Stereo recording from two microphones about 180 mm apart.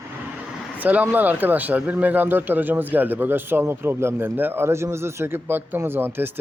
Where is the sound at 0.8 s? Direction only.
10° right (ahead or behind).